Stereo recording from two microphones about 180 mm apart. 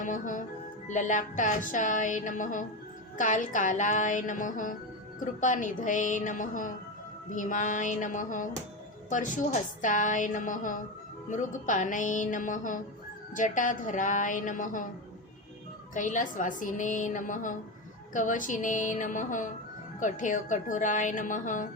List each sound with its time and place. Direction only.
0.0 s speech: 45° left (ahead or behind)
16.0 s speech: 45° left (ahead or behind)